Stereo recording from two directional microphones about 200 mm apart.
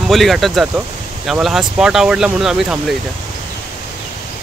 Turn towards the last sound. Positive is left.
turn(degrees=-5)  # may be behind; listen again after turning